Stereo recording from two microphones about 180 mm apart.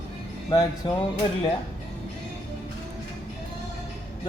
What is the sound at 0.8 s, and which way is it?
Speech, 25° left (ahead or behind).